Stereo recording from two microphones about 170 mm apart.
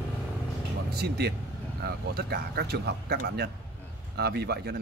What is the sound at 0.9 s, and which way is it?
A man's voice, 70° right (ahead or behind).